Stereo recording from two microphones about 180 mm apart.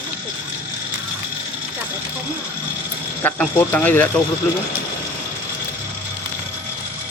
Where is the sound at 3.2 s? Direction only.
10° left (ahead or behind).